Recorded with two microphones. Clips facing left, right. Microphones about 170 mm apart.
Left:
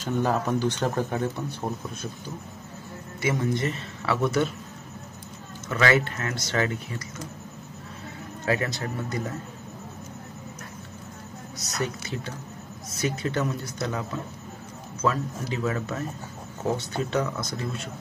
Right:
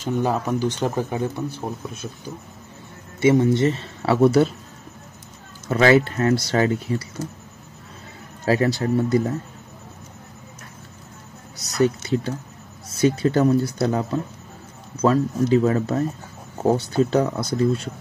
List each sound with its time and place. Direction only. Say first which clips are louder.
0.0 s speech: right 3 dB; 15° right (ahead or behind)
3.2 s speech: right 10 dB; 25° right (ahead or behind)
5.7 s speech: right 7 dB; 30° right (ahead or behind)
8.5 s speech: right 8 dB; 35° right (ahead or behind)
11.5 s speech: right 11 dB; 35° right (ahead or behind)